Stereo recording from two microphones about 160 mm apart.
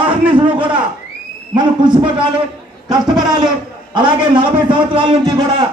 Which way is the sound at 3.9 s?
30° right (ahead or behind).